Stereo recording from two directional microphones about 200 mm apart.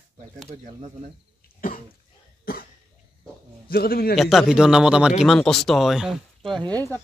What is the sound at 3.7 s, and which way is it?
Speech, 50° left (ahead or behind).